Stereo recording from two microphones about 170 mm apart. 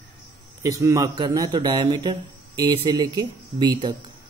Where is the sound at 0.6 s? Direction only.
20° right (ahead or behind).